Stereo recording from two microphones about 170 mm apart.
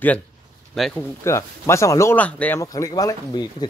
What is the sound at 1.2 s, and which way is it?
Speech, 15° left (ahead or behind).